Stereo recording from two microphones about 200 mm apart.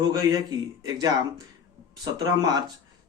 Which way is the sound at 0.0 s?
20° right (ahead or behind).